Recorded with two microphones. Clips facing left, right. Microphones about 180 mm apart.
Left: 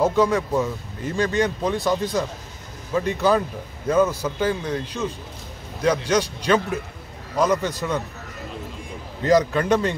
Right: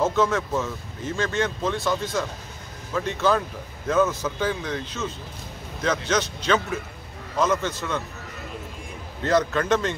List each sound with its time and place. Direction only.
0.0 s a man's voice: 15° left (ahead or behind)
9.2 s a man's voice: 10° left (ahead or behind)